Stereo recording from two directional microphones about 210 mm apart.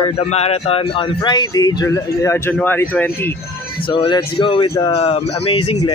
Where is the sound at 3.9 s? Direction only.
25° left (ahead or behind).